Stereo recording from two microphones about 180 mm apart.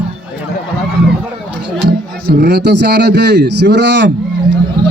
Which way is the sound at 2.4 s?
65° right (ahead or behind).